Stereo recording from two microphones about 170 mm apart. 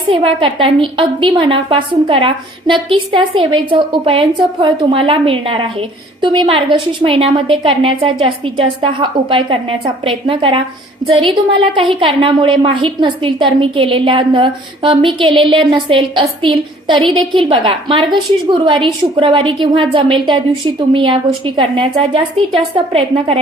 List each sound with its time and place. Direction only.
0.1 s a woman's voice: 30° right (ahead or behind)